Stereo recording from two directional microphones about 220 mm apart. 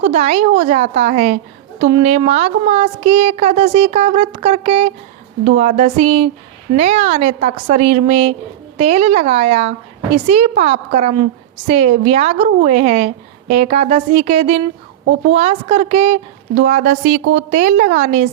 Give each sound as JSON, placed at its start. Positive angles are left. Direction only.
{"t": 0.0, "sound": "a child's voice", "side_deg": -30}